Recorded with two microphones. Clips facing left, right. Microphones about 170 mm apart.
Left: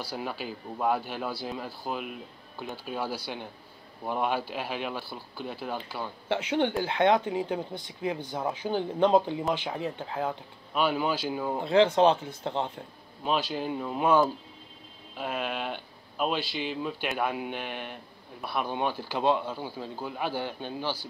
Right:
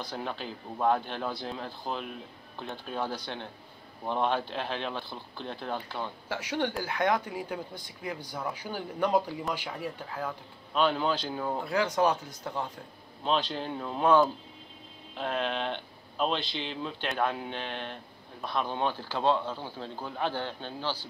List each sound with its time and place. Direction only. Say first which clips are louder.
0.0 s a man's voice: left 1 dB; 5° left (ahead or behind)
6.2 s speech: left 6 dB; 25° left (ahead or behind)
10.7 s speech: even; 10° left (ahead or behind)
11.6 s speech: left 7 dB; 25° left (ahead or behind)
13.2 s speech: left 1 dB; 5° left (ahead or behind)